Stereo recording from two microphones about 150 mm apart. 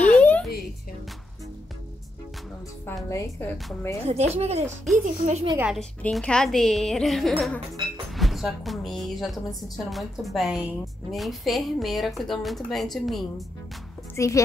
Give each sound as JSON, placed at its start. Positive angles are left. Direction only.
{"t": 0.0, "sound": "a sound", "side_deg": 10}
{"t": 2.9, "sound": "a woman's voice", "side_deg": 20}
{"t": 4.0, "sound": "speech", "side_deg": -45}
{"t": 5.8, "sound": "a woman's voice", "side_deg": 5}
{"t": 8.2, "sound": "music", "side_deg": 0}
{"t": 9.8, "sound": "a woman's voice", "side_deg": 0}
{"t": 14.1, "sound": "a woman's voice", "side_deg": 20}